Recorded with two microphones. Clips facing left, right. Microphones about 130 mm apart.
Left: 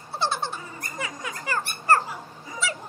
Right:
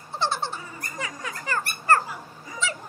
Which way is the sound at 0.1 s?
15° left (ahead or behind).